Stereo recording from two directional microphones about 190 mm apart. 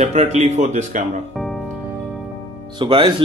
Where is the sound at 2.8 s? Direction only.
25° right (ahead or behind).